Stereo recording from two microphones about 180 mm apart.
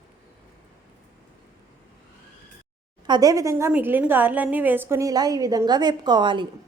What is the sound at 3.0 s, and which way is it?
A woman's voice, 20° right (ahead or behind).